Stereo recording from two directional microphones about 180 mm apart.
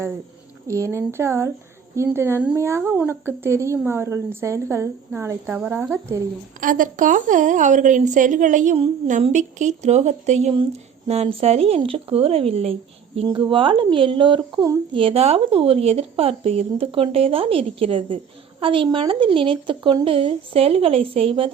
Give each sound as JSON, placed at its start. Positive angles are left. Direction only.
{"t": 0.7, "sound": "speech", "side_deg": -15}
{"t": 6.6, "sound": "a woman's voice", "side_deg": -50}
{"t": 15.0, "sound": "a woman's voice", "side_deg": -35}